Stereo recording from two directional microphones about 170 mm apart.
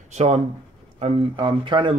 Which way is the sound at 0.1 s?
40° right (ahead or behind).